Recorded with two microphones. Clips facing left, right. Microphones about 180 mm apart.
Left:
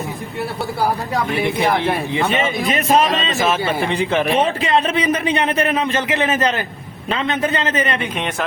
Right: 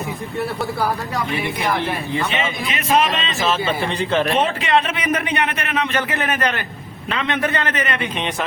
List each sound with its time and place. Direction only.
2.3 s speech: 45° left (ahead or behind)
3.4 s speech: 15° left (ahead or behind)
4.6 s speech: 30° left (ahead or behind)